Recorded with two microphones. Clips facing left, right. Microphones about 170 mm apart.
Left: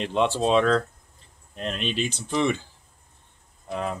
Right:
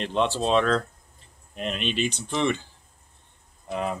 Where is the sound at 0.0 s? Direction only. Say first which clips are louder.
Left 2 dB; 10° left (ahead or behind).